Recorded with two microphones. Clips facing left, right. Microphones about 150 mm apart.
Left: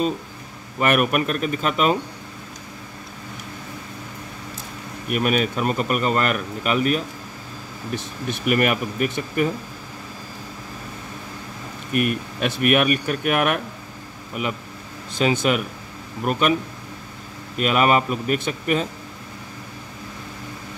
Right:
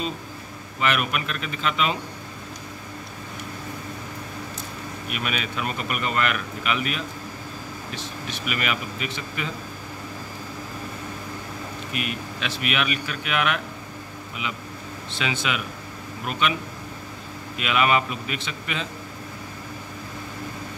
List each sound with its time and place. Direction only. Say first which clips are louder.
0.7 s speech: left 6 dB; 50° left (ahead or behind)
5.1 s speech: left 9 dB; 45° left (ahead or behind)
7.9 s speech: left 8 dB; 55° left (ahead or behind)
11.9 s speech: left 10 dB; 50° left (ahead or behind)
15.0 s speech: left 8 dB; 45° left (ahead or behind)
17.6 s speech: left 4 dB; 40° left (ahead or behind)